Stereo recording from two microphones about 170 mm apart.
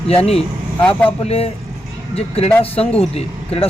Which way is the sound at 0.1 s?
35° left (ahead or behind).